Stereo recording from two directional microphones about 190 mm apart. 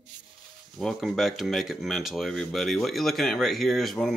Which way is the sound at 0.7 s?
Centre (ahead or behind).